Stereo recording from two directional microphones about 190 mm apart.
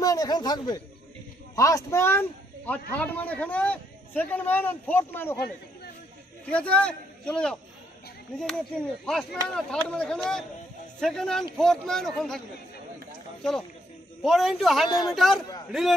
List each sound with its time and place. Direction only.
0.0 s a man's voice: 20° left (ahead or behind)
6.5 s a man's voice: 5° left (ahead or behind)
13.4 s a man's voice: centre (ahead or behind)